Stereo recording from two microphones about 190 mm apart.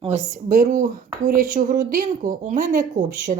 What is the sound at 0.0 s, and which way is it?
A woman's voice, 40° right (ahead or behind).